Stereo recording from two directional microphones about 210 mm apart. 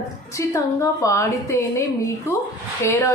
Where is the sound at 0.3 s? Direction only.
15° left (ahead or behind).